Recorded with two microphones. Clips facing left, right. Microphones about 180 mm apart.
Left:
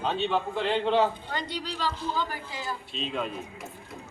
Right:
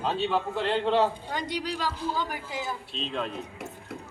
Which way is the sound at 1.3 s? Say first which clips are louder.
Right 2 dB; 10° right (ahead or behind).